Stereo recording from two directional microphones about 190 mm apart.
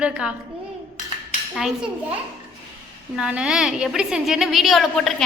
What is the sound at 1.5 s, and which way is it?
Speech, centre (ahead or behind).